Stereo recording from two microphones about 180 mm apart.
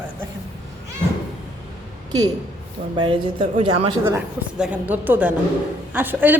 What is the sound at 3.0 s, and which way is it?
Speech, 30° right (ahead or behind).